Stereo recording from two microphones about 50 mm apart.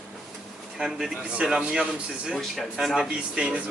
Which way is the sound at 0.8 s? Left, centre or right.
Centre.